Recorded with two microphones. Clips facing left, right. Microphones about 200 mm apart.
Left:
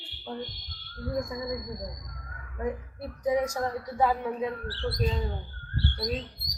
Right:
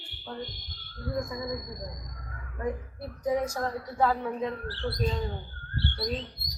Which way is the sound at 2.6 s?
15° left (ahead or behind).